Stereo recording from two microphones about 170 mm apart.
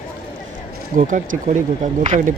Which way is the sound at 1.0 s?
50° right (ahead or behind).